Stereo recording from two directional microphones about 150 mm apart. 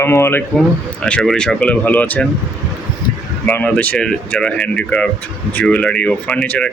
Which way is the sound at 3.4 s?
10° left (ahead or behind).